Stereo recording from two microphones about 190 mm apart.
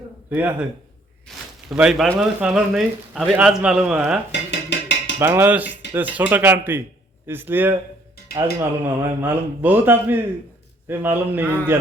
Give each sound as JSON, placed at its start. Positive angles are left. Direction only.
{"t": 0.3, "sound": "speech", "side_deg": -10}
{"t": 1.7, "sound": "a man's voice", "side_deg": -5}
{"t": 4.3, "sound": "dishes", "side_deg": 65}
{"t": 5.2, "sound": "a man's voice", "side_deg": -10}